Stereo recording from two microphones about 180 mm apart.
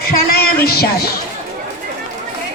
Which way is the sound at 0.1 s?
55° left (ahead or behind).